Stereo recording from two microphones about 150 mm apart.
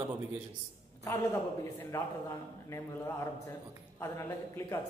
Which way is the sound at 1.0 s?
20° left (ahead or behind).